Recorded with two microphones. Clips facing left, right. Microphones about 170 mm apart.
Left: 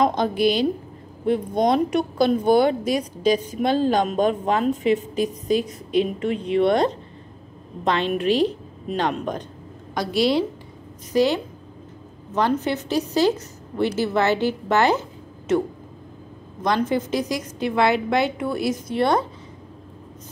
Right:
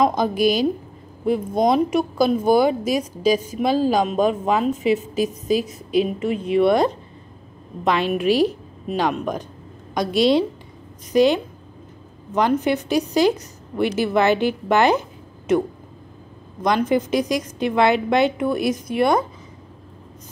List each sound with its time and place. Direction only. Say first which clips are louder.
0.0 s a woman's voice: right 1 dB; 10° right (ahead or behind)
9.9 s a woman's voice: right 3 dB; 20° right (ahead or behind)
16.6 s a woman's voice: right 3 dB; 15° right (ahead or behind)